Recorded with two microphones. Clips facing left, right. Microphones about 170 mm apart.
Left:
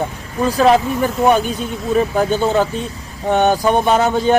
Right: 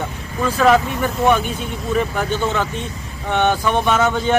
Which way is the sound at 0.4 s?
30° left (ahead or behind).